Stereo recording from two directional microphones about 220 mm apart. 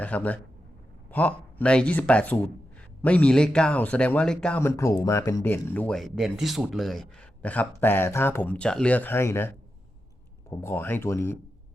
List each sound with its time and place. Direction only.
0.0 s speech: 5° left (ahead or behind)
10.5 s speech: 10° left (ahead or behind)